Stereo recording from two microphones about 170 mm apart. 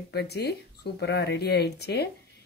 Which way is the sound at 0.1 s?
75° left (ahead or behind).